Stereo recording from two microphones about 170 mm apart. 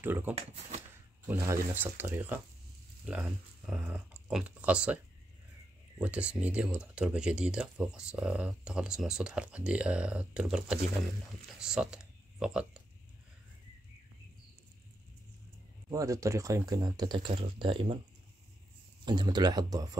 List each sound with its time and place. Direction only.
0.0 s speech: 10° right (ahead or behind)
15.9 s speech: 20° right (ahead or behind)
19.0 s speech: 25° right (ahead or behind)